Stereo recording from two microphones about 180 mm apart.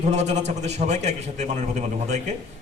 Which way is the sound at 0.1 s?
40° right (ahead or behind).